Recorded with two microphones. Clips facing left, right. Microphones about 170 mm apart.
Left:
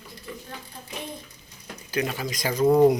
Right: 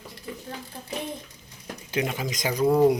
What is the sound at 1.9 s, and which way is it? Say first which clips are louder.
Speech: even; 20° right (ahead or behind).